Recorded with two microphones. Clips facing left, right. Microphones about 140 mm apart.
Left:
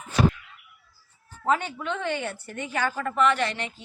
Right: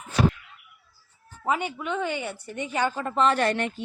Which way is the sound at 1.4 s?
10° right (ahead or behind).